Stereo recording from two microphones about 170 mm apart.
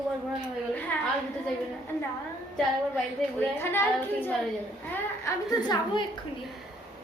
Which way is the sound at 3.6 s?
15° left (ahead or behind).